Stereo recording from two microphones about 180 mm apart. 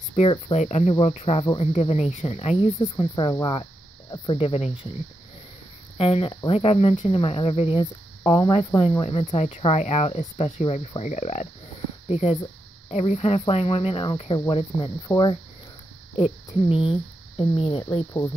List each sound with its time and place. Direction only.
0.1 s speech: 35° left (ahead or behind)
5.9 s speech: 35° left (ahead or behind)